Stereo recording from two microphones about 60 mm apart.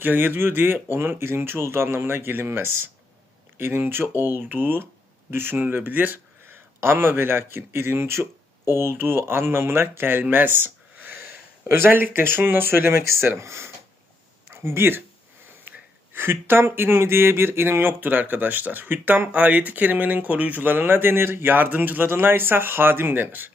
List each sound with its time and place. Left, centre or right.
0.0 s speech: right